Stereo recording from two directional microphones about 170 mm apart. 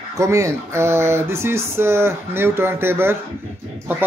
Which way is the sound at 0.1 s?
20° right (ahead or behind).